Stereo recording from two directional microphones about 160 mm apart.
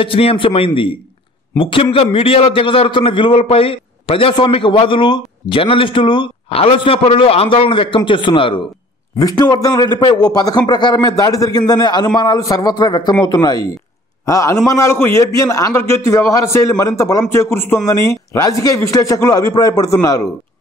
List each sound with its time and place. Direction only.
0.0 s a man's voice: 35° left (ahead or behind)